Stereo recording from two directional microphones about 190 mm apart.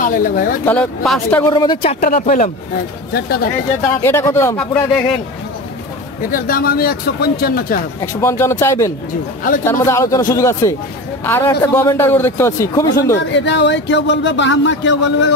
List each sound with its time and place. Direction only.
0.0 s speech: 50° left (ahead or behind)
0.7 s a man's voice: 5° left (ahead or behind)
1.4 s speech: 20° left (ahead or behind)
2.0 s speech: 45° left (ahead or behind)
3.1 s speech: 55° left (ahead or behind)
4.0 s a man's voice: 15° left (ahead or behind)
6.3 s speech: 50° left (ahead or behind)
8.0 s a man's voice: 15° left (ahead or behind)
13.3 s a man's voice: 70° left (ahead or behind)